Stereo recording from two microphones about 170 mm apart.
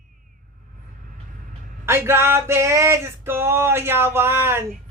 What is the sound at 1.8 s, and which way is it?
Male singing, 15° right (ahead or behind).